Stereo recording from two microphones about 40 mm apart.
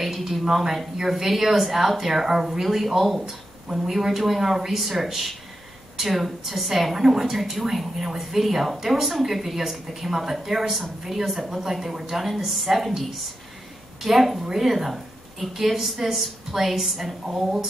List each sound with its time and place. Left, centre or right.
0.0 s a woman's voice: centre